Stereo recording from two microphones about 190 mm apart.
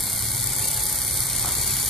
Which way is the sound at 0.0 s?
Centre (ahead or behind).